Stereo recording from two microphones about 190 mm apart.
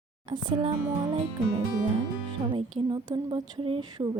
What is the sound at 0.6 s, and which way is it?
Speech, 30° right (ahead or behind).